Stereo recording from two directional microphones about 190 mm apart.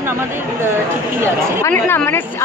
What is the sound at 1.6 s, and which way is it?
Speech, 10° left (ahead or behind).